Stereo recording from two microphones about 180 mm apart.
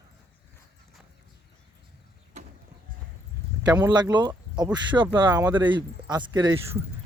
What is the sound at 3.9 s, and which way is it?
Speech, 25° right (ahead or behind).